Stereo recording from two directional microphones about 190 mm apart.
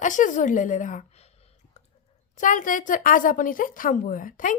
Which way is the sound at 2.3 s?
45° left (ahead or behind).